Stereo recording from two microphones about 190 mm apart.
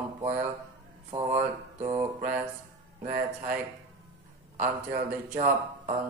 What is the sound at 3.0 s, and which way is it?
Speech, 40° right (ahead or behind).